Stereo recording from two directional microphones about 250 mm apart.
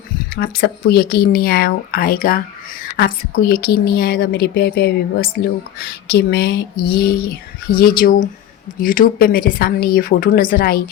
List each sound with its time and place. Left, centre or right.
0.3 s a woman's voice: left